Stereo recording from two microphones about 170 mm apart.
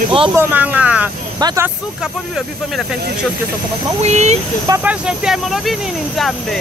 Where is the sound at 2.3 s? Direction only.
5° right (ahead or behind).